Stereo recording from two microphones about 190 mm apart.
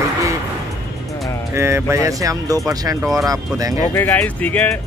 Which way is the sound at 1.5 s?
15° right (ahead or behind).